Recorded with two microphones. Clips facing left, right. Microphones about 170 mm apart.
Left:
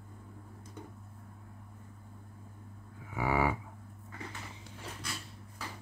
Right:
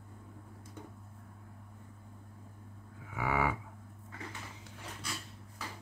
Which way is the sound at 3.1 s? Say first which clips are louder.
Left 2 dB; 30° left (ahead or behind).